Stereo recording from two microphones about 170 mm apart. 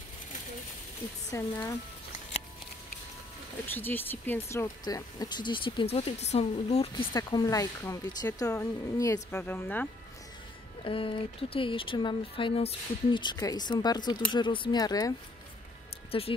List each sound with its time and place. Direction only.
1.3 s speech: 20° left (ahead or behind)
3.7 s speech: 10° left (ahead or behind); by 6.9 s 40° left (ahead or behind)
7.2 s speech: 20° left (ahead or behind)
10.8 s speech: 30° left (ahead or behind)
16.1 s speech: 35° left (ahead or behind)